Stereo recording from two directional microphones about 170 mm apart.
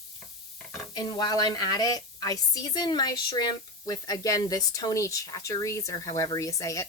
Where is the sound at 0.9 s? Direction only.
25° left (ahead or behind).